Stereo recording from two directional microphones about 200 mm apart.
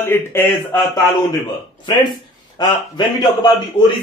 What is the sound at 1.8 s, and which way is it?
A man's voice, 20° left (ahead or behind).